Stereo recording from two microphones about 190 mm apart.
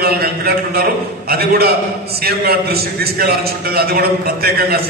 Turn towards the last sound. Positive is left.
turn(degrees=-55)  # may be behind; listen again after turning